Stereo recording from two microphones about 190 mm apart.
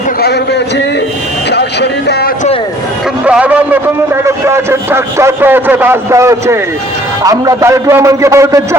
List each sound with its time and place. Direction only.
1.5 s music: 60° left (ahead or behind)
3.2 s a man's voice: 5° right (ahead or behind)